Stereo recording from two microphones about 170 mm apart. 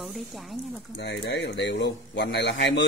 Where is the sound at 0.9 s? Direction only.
80° left.